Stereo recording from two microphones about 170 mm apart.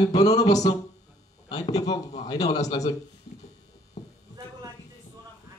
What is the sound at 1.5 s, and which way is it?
Speech, 20° left (ahead or behind).